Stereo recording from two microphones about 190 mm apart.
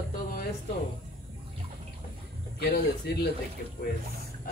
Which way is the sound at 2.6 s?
55° left (ahead or behind).